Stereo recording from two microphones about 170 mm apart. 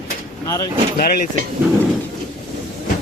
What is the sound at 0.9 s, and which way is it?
Speech, 60° left (ahead or behind).